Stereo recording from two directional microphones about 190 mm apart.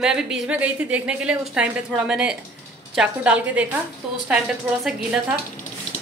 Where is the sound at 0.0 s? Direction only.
5° right (ahead or behind).